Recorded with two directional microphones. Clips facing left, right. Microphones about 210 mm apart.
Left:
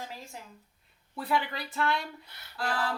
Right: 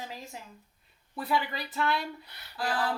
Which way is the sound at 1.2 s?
5° right (ahead or behind).